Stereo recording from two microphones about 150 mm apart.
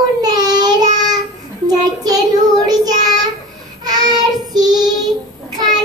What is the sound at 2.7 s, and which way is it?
Child singing, 25° right (ahead or behind).